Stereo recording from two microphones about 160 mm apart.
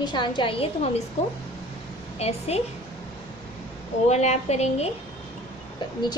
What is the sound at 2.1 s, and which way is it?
Speech, 40° left (ahead or behind).